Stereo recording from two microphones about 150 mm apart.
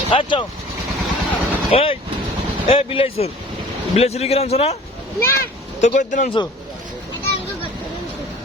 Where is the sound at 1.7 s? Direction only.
40° left (ahead or behind).